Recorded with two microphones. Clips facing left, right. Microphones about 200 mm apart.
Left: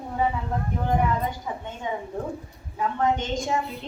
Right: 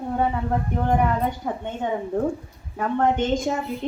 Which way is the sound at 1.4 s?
55° right (ahead or behind).